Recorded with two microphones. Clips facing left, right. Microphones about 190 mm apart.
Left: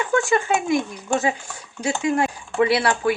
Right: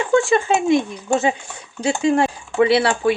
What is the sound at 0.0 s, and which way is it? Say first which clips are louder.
Speech: right 4 dB; 25° right (ahead or behind).